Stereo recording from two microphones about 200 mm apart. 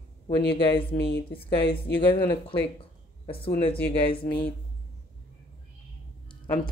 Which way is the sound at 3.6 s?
25° left (ahead or behind).